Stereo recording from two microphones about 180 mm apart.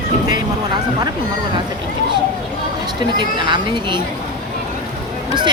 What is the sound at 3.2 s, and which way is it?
Speech, 25° right (ahead or behind).